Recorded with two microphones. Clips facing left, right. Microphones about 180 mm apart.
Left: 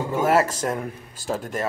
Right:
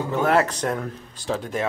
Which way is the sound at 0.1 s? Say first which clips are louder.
Even; 5° left (ahead or behind).